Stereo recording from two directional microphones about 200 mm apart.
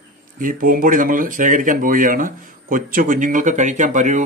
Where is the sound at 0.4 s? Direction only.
45° right (ahead or behind).